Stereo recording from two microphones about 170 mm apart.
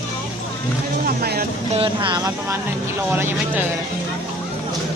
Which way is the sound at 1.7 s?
30° right (ahead or behind).